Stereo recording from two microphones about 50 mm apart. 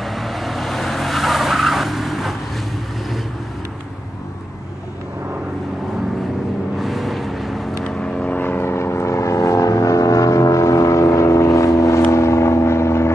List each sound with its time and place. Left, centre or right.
0.0 s vehicle: centre
6.8 s vehicle: centre
7.8 s vehicle: centre
8.4 s vehicle: left